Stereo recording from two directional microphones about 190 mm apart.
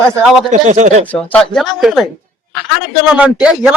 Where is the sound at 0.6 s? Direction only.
40° right (ahead or behind).